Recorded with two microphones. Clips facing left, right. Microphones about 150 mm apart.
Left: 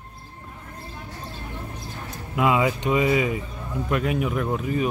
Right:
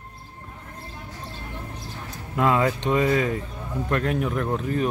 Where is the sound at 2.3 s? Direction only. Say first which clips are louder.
Even; 5° left (ahead or behind).